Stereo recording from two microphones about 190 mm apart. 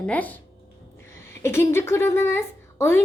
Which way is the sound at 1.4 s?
15° left (ahead or behind).